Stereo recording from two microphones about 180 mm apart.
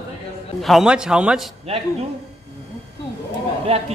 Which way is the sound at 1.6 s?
35° right (ahead or behind).